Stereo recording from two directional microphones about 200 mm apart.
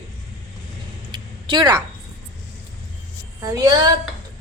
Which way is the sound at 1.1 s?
20° right (ahead or behind).